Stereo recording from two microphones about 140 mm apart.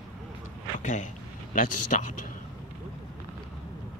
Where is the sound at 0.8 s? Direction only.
65° left (ahead or behind).